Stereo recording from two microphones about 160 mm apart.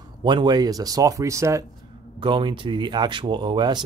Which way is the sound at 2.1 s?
30° right (ahead or behind).